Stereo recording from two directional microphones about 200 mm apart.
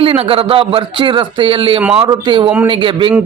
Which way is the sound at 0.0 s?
30° right (ahead or behind).